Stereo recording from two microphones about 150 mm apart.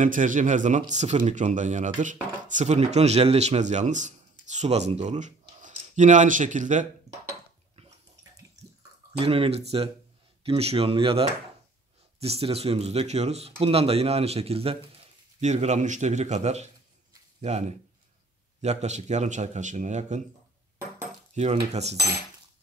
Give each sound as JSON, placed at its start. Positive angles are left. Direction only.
{"t": 0.0, "sound": "a man's voice", "side_deg": -60}
{"t": 9.2, "sound": "a man's voice", "side_deg": -40}
{"t": 21.4, "sound": "speech", "side_deg": -50}